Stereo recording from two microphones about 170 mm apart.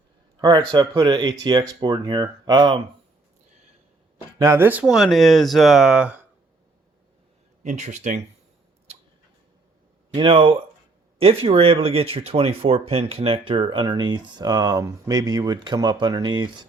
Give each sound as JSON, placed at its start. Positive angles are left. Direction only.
{"t": 0.4, "sound": "speech", "side_deg": -25}
{"t": 4.4, "sound": "speech", "side_deg": -15}
{"t": 7.6, "sound": "speech", "side_deg": -45}
{"t": 10.2, "sound": "speech", "side_deg": -30}